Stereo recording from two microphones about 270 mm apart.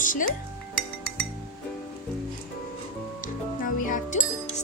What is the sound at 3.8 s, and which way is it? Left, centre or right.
Music, left.